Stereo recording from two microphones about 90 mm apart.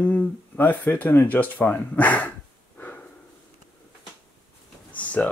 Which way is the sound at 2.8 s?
20° left (ahead or behind).